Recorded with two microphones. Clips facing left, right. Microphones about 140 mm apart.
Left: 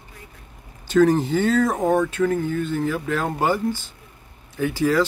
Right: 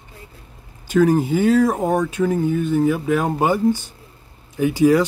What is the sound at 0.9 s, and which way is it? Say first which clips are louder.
Speech: right 1 dB; 5° right (ahead or behind).